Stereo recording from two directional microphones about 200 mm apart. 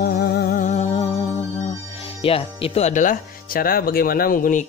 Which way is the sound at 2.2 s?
30° left (ahead or behind).